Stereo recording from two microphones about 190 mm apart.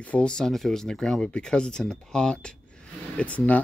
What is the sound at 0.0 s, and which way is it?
Speech, 5° left (ahead or behind).